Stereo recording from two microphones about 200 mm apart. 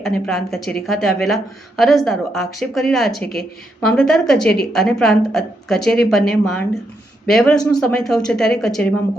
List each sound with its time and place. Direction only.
0.3 s a woman's voice: centre (ahead or behind)
3.2 s a woman's voice: 50° left (ahead or behind)
3.8 s a woman's voice: 5° left (ahead or behind)